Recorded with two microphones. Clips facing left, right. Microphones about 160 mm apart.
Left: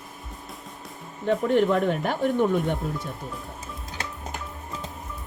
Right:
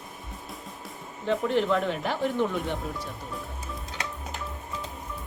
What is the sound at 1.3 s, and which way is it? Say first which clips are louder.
Speech: left 3 dB; 50° left (ahead or behind).